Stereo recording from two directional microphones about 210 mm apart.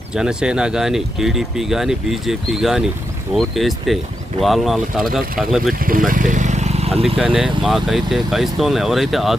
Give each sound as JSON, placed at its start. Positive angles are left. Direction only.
{"t": 0.1, "sound": "speech", "side_deg": -5}
{"t": 6.1, "sound": "vehicle", "side_deg": -40}
{"t": 7.2, "sound": "speech", "side_deg": -5}